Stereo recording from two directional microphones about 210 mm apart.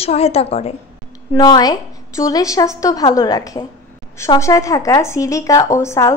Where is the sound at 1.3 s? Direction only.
20° left (ahead or behind).